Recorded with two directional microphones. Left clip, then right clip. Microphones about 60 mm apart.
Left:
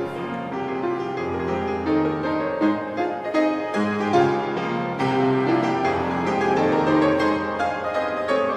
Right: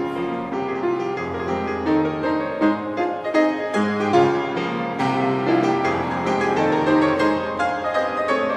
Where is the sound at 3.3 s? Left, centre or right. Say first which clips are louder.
Right 3 dB; right.